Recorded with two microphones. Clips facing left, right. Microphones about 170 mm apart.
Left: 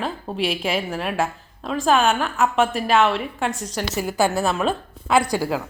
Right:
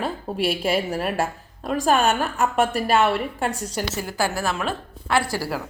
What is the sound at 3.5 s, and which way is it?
Speech, 35° right (ahead or behind).